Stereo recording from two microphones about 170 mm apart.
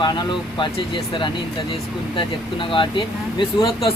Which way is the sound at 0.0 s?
25° left (ahead or behind).